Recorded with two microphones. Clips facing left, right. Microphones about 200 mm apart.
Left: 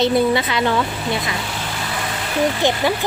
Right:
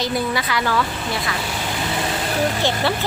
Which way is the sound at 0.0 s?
25° left (ahead or behind).